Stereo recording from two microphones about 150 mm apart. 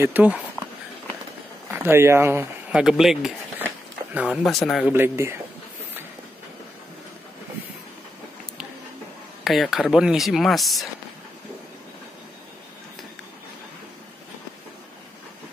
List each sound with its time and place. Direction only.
0.0 s speech: 10° right (ahead or behind)
1.7 s speech: 15° right (ahead or behind)
2.8 s speech: centre (ahead or behind)
3.6 s a sound: 10° right (ahead or behind)
4.3 s speech: centre (ahead or behind)
4.9 s speech: 15° right (ahead or behind)
9.4 s speech: centre (ahead or behind)